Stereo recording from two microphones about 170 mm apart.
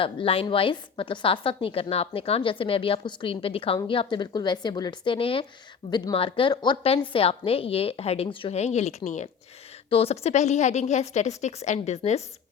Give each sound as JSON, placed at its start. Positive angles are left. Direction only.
{"t": 0.0, "sound": "a woman's voice", "side_deg": 30}